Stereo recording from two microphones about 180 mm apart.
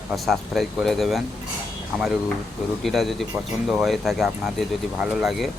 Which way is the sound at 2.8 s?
Centre (ahead or behind).